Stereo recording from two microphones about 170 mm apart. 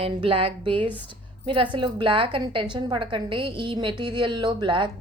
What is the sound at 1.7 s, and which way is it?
A woman's voice, 30° right (ahead or behind).